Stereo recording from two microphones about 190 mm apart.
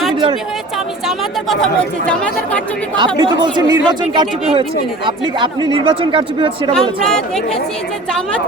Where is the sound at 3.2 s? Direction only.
25° right (ahead or behind).